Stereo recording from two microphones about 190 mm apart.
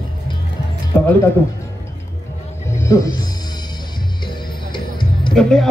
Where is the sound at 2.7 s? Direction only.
15° left (ahead or behind).